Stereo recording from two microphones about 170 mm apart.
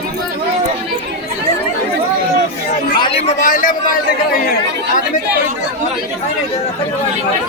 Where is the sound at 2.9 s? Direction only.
30° left (ahead or behind); by 3.8 s 50° left (ahead or behind).